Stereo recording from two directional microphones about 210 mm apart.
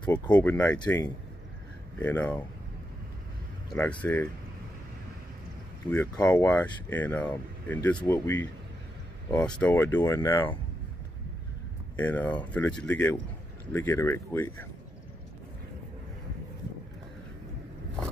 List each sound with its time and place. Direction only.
0.0 s speech: 20° left (ahead or behind)
4.0 s speech: 5° left (ahead or behind)
5.9 s speech: 20° left (ahead or behind)
6.2 s speech: 10° left (ahead or behind)
12.0 s speech: 5° left (ahead or behind)